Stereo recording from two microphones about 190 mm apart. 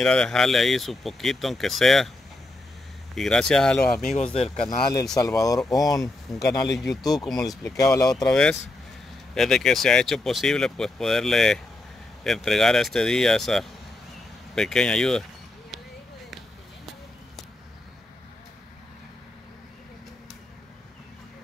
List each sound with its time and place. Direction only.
0.0 s speech: 5° left (ahead or behind)
3.2 s speech: 5° left (ahead or behind)
4.3 s speech: 30° left (ahead or behind)
5.1 s speech: 20° left (ahead or behind)
5.6 s speech: centre (ahead or behind)
5.9 s speech: 20° left (ahead or behind)
6.8 s speech: centre (ahead or behind)
7.4 s speech: 20° left (ahead or behind)
8.2 s speech: 5° left (ahead or behind)